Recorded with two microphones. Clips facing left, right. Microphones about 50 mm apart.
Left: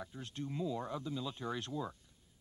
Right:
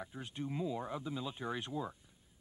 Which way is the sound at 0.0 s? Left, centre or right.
Centre.